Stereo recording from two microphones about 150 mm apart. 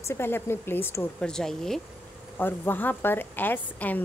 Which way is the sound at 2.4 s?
15° left (ahead or behind).